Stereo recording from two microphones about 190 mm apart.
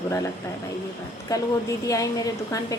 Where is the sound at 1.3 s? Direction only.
20° left (ahead or behind).